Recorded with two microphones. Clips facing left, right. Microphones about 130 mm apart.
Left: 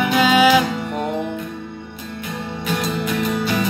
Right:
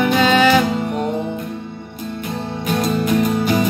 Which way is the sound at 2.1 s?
35° right (ahead or behind).